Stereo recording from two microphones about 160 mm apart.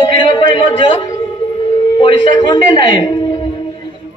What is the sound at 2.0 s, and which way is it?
A man's voice, 30° left (ahead or behind).